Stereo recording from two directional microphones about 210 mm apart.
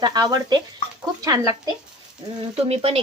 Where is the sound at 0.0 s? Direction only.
20° right (ahead or behind).